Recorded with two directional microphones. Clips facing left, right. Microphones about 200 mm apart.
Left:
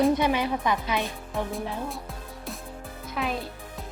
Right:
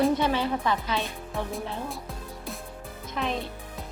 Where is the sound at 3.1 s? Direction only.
5° left (ahead or behind).